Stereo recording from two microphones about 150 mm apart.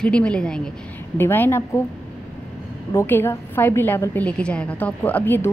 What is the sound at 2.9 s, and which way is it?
A woman's voice, 15° left (ahead or behind).